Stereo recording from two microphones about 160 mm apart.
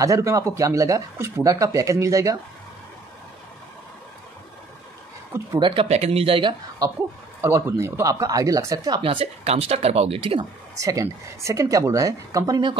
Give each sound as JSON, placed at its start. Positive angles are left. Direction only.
{"t": 0.0, "sound": "speech", "side_deg": -20}
{"t": 5.6, "sound": "speech", "side_deg": -35}
{"t": 7.4, "sound": "speech", "side_deg": -15}
{"t": 10.8, "sound": "speech", "side_deg": -20}